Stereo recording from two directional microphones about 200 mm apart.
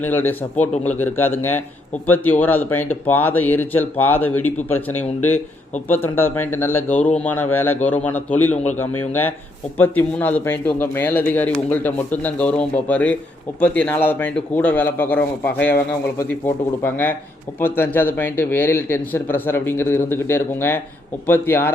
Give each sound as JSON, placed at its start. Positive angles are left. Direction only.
{"t": 0.0, "sound": "speech", "side_deg": 10}
{"t": 8.5, "sound": "a man's voice", "side_deg": 35}
{"t": 8.8, "sound": "speech", "side_deg": 10}